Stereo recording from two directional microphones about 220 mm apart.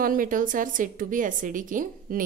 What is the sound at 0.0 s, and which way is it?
A woman's voice, 40° right (ahead or behind).